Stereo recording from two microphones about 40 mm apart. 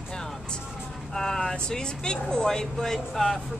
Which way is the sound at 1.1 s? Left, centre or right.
Centre.